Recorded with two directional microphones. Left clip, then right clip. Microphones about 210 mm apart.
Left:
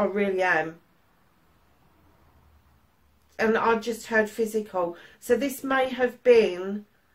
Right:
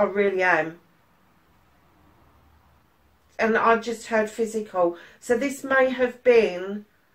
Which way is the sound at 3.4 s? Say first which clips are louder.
Right 3 dB; 45° left (ahead or behind).